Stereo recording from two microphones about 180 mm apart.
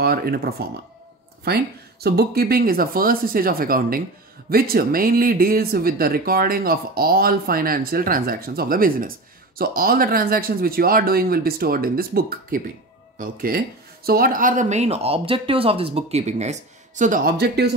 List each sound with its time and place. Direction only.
0.0 s speech: 60° right (ahead or behind)